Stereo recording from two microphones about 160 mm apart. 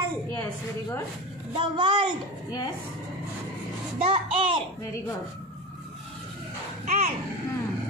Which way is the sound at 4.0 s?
35° right (ahead or behind).